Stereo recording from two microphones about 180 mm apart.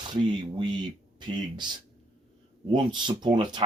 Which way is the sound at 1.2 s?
25° right (ahead or behind).